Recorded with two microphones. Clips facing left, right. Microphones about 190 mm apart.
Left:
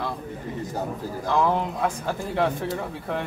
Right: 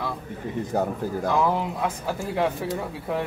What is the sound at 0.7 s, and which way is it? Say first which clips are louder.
Speech: right 6 dB; 55° right (ahead or behind).